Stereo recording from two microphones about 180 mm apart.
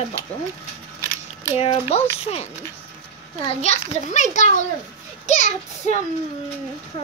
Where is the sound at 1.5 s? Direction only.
35° left (ahead or behind).